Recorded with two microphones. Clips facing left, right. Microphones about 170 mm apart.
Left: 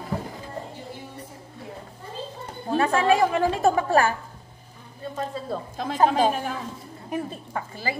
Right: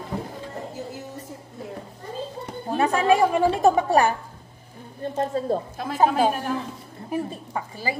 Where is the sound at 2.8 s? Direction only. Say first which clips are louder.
Right 1 dB; 10° right (ahead or behind).